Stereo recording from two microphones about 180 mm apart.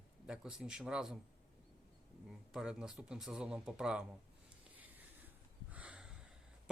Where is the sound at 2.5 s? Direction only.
5° right (ahead or behind).